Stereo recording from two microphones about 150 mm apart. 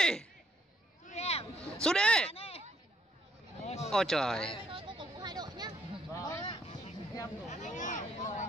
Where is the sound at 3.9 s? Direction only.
5° left (ahead or behind).